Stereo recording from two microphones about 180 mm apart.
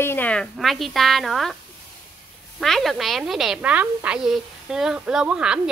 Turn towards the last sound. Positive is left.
turn(degrees=-5)  # may be behind; listen again after turning